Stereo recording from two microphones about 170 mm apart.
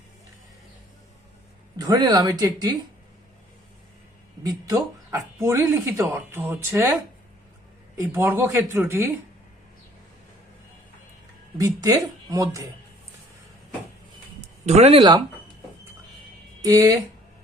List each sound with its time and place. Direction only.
1.8 s speech: 25° right (ahead or behind)
4.4 s speech: 20° right (ahead or behind)
11.6 s speech: 20° right (ahead or behind)
14.7 s speech: 40° right (ahead or behind)
16.6 s speech: 20° right (ahead or behind)